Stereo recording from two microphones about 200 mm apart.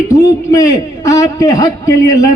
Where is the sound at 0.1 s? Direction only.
15° left (ahead or behind).